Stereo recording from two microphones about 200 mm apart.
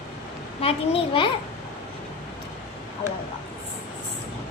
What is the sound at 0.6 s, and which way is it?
Speech, 30° left (ahead or behind).